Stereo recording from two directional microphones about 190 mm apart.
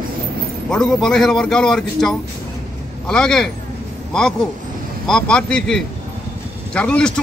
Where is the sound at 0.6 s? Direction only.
5° left (ahead or behind).